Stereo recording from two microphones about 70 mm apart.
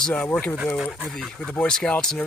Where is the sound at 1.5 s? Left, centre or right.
Centre.